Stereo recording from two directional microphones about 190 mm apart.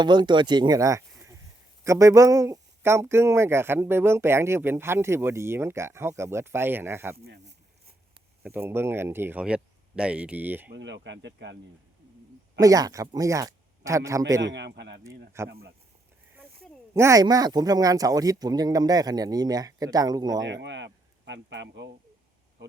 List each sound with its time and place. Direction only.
0.0 s speech: 25° right (ahead or behind)
7.3 s a sound: 60° right (ahead or behind)
8.4 s speech: 10° right (ahead or behind)
10.7 s speech: 70° right (ahead or behind)
12.5 s speech: 20° right (ahead or behind)
14.4 s speech: 65° right (ahead or behind)
16.9 s speech: 15° right (ahead or behind)
20.5 s speech: 70° right (ahead or behind)